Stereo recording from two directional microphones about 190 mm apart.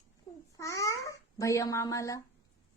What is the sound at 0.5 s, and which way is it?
A child's voice, 15° left (ahead or behind).